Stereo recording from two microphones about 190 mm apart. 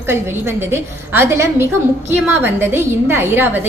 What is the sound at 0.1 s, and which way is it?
A woman's voice, 10° right (ahead or behind).